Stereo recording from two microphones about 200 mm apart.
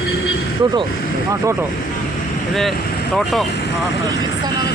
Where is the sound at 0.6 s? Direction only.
20° right (ahead or behind).